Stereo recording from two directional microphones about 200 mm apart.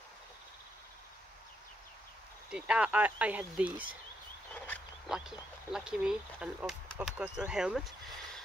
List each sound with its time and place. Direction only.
2.5 s speech: 5° right (ahead or behind)
5.0 s speech: 5° right (ahead or behind)